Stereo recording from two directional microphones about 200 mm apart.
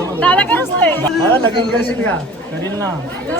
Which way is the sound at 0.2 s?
10° left (ahead or behind).